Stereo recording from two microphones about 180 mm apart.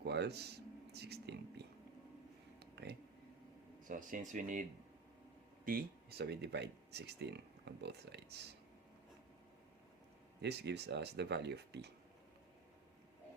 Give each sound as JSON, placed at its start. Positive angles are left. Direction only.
{"t": 0.0, "sound": "speech", "side_deg": -65}
{"t": 2.6, "sound": "a sound", "side_deg": -70}
{"t": 3.8, "sound": "speech", "side_deg": -45}
{"t": 5.6, "sound": "speech", "side_deg": -55}
{"t": 10.4, "sound": "speech", "side_deg": -70}